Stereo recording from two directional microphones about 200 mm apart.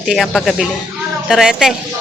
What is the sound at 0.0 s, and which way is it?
Speech, centre (ahead or behind).